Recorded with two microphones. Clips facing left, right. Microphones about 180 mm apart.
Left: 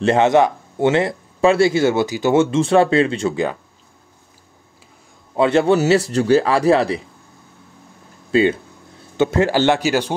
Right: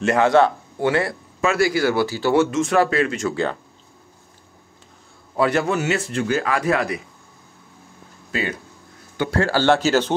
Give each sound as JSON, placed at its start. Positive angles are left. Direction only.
{"t": 0.0, "sound": "speech", "side_deg": 25}
{"t": 5.3, "sound": "speech", "side_deg": 25}
{"t": 8.3, "sound": "speech", "side_deg": 25}